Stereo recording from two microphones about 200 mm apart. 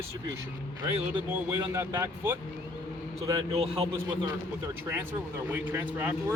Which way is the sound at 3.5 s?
30° right (ahead or behind).